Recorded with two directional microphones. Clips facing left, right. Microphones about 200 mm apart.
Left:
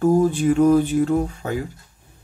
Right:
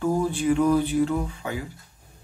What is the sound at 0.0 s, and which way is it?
Speech, 45° left (ahead or behind).